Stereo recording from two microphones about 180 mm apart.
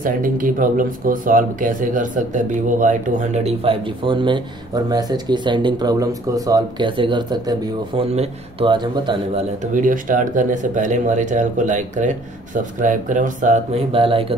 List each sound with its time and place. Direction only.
0.0 s speech: 50° right (ahead or behind)
13.9 s speech: 30° right (ahead or behind)